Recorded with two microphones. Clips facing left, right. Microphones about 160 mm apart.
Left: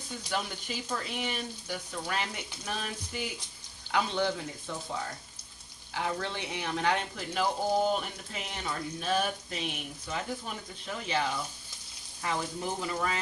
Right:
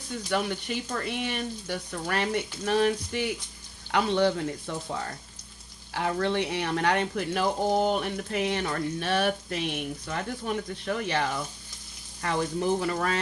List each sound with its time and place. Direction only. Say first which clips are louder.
0.3 s speech: right 6 dB; 65° right (ahead or behind)
3.9 s speech: right 6 dB; 60° right (ahead or behind)
5.9 s speech: right 6 dB; 60° right (ahead or behind)